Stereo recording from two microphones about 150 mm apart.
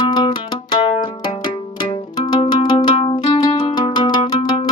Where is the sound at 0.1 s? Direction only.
35° left (ahead or behind).